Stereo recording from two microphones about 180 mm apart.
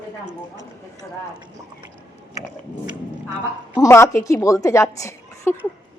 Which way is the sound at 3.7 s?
15° left (ahead or behind).